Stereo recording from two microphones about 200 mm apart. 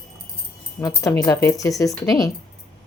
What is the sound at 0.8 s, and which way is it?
Speech, 15° left (ahead or behind).